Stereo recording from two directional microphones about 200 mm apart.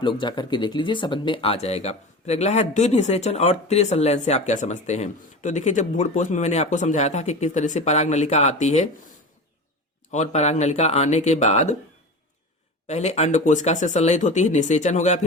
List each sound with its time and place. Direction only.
0.0 s speech: 25° left (ahead or behind)
12.9 s speech: 35° left (ahead or behind)